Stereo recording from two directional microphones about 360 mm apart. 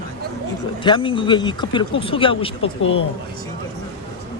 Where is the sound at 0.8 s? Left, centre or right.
Centre.